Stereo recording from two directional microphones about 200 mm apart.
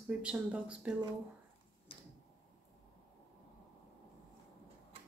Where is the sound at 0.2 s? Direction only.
5° right (ahead or behind).